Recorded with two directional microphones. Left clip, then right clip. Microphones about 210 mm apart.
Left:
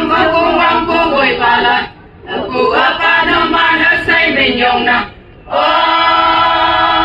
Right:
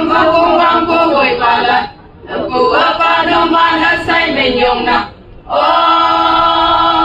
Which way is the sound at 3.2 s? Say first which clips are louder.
Right 1 dB; 30° left (ahead or behind).